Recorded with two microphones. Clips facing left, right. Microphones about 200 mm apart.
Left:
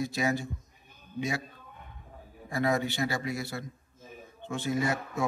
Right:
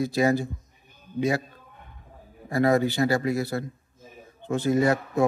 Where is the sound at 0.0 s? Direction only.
35° right (ahead or behind).